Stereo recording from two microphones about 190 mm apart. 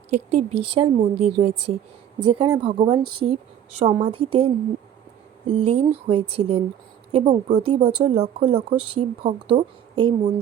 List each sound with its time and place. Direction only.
0.1 s a woman's voice: 35° right (ahead or behind)
5.5 s a woman's voice: 30° right (ahead or behind)